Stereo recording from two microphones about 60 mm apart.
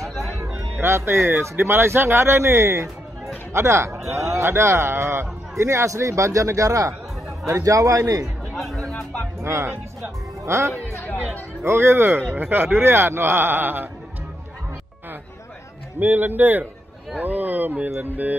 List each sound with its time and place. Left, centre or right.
0.7 s a man's voice: right
8.5 s music: centre
9.4 s speech: right
16.0 s speech: right